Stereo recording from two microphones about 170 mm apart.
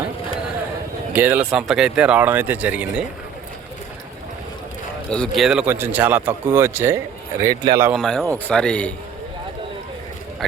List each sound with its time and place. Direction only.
1.1 s speech: 10° right (ahead or behind)
5.1 s speech: centre (ahead or behind); by 7.9 s 25° right (ahead or behind)
7.9 s speech: centre (ahead or behind)